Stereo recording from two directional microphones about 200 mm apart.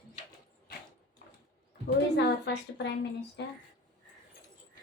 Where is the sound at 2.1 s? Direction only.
55° left (ahead or behind).